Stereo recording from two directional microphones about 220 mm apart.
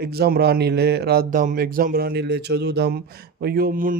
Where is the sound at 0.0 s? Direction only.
45° right (ahead or behind).